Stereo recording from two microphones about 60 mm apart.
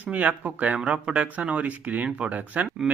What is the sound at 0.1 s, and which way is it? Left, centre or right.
Speech, right.